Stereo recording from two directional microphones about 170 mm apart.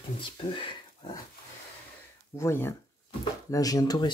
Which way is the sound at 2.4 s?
15° left (ahead or behind).